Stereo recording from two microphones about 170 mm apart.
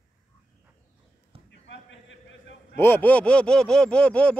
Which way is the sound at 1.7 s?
90° left.